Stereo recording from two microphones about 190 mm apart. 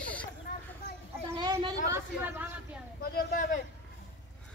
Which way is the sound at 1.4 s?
20° right (ahead or behind).